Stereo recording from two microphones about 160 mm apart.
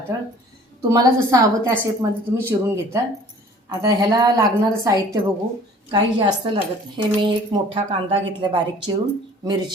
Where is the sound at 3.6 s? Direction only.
25° right (ahead or behind).